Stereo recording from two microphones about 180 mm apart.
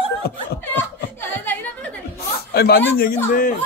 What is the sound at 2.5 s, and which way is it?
Chuckle, 60° left (ahead or behind).